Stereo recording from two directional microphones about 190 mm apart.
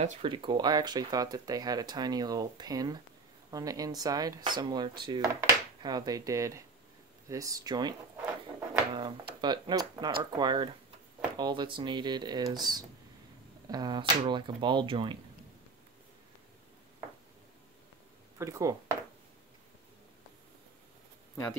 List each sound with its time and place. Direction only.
0.0 s speech: 35° right (ahead or behind)
0.3 s speech: 25° right (ahead or behind)
8.5 s a sound: 25° right (ahead or behind)
10.3 s speech: 25° right (ahead or behind)
18.4 s speech: 15° right (ahead or behind)